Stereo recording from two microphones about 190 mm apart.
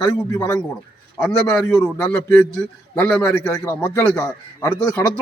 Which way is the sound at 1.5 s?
5° left (ahead or behind).